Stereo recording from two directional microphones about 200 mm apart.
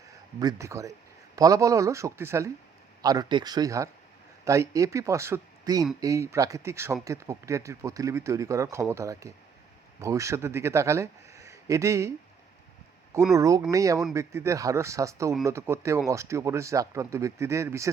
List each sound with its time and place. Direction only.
0.3 s speech: 15° right (ahead or behind)
13.3 s speech: 15° right (ahead or behind)